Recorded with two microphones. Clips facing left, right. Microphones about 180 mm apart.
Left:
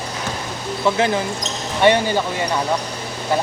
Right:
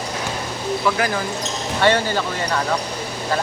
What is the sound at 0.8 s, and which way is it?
Speech, 25° left (ahead or behind).